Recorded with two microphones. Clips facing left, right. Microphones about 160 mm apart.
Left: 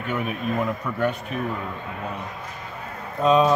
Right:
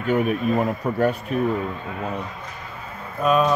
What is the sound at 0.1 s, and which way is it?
Speech, 45° right (ahead or behind).